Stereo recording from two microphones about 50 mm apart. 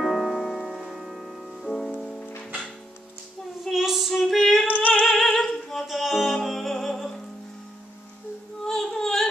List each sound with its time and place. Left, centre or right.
0.0 s music: centre
0.7 s music: centre
3.6 s child singing: centre
4.1 s female singing: centre
4.6 s a sound: left
5.0 s music: centre
8.6 s yodeling: centre